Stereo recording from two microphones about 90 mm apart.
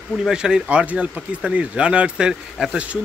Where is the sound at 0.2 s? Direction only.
10° right (ahead or behind).